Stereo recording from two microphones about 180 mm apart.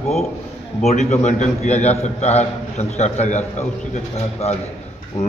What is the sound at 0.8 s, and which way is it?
A man's voice, 40° left (ahead or behind).